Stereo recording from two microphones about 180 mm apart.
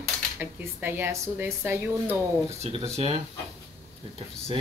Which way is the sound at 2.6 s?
35° right (ahead or behind).